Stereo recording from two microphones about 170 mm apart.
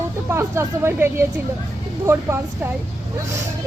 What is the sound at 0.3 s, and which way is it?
Speech, 15° right (ahead or behind).